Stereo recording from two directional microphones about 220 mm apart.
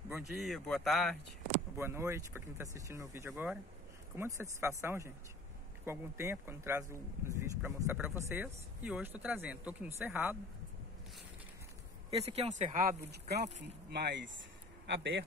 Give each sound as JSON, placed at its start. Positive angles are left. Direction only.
{"t": 0.2, "sound": "speech", "side_deg": 0}
{"t": 1.8, "sound": "speech", "side_deg": -10}
{"t": 12.1, "sound": "speech", "side_deg": -25}
{"t": 13.1, "sound": "a man's voice", "side_deg": -50}